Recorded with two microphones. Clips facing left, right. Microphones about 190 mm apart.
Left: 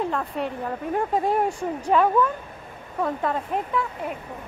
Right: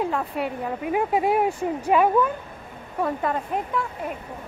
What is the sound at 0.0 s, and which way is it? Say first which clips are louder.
Speech: right 1 dB; 5° right (ahead or behind).